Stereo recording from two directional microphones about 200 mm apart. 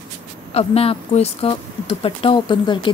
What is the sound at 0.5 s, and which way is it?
Speech, 30° left (ahead or behind).